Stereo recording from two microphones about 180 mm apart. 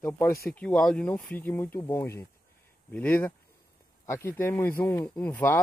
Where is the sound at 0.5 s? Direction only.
5° left (ahead or behind).